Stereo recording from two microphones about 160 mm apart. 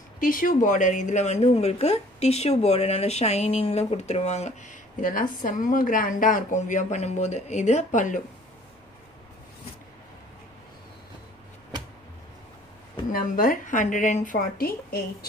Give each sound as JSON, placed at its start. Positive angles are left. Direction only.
{"t": 0.2, "sound": "speech", "side_deg": 60}
{"t": 13.1, "sound": "a woman's voice", "side_deg": 60}